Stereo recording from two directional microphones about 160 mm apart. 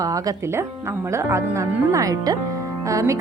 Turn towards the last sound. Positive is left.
turn(degrees=-20)  # may be behind; listen again after turning